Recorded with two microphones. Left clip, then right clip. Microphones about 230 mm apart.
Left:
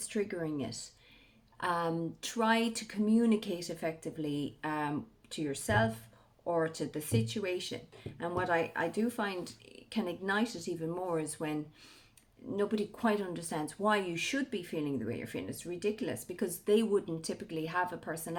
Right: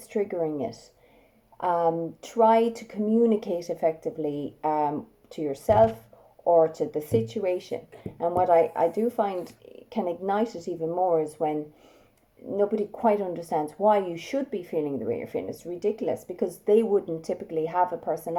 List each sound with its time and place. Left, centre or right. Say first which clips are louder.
0.1 s speech: right 9 dB; left